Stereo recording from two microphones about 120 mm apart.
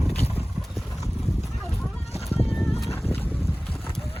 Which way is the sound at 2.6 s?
Centre (ahead or behind).